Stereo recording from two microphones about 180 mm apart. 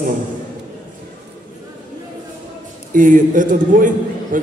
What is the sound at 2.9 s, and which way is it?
Speech, 50° right (ahead or behind).